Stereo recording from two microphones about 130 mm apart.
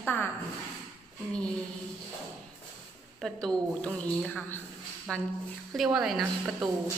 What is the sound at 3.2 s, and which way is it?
A woman's voice, 5° left (ahead or behind).